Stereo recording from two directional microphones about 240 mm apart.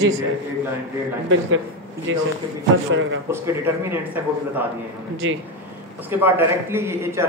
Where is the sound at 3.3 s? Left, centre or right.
Centre.